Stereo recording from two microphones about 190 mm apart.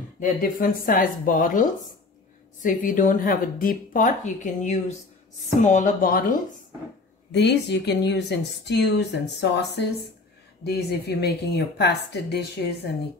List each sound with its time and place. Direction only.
0.2 s speech: 50° left (ahead or behind)
7.3 s speech: 65° left (ahead or behind)